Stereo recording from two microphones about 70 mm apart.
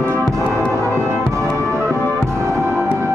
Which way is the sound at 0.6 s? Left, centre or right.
Right.